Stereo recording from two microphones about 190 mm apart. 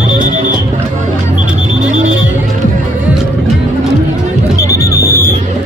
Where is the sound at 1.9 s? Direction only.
40° right (ahead or behind).